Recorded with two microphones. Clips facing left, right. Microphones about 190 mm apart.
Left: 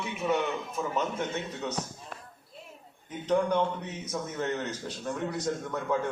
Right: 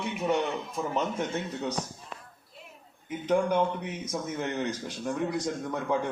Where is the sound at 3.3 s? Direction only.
10° right (ahead or behind).